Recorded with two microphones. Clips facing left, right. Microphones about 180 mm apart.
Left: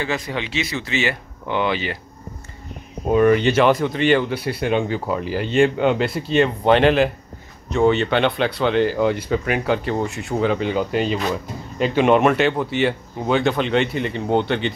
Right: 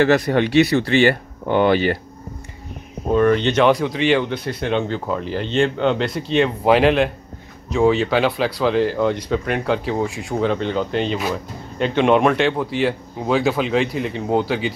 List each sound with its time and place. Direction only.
0.0 s speech: 70° right (ahead or behind); by 2.0 s 50° right (ahead or behind)
3.2 s speech: 10° left (ahead or behind)